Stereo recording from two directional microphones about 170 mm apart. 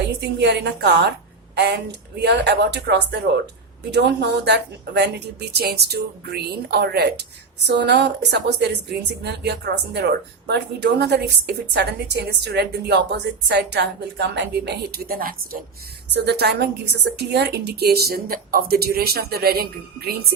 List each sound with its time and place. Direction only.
0.0 s a woman's voice: 85° right
7.7 s speech: 85° right; by 15.4 s 60° right (ahead or behind)
16.1 s a woman's voice: 75° right (ahead or behind)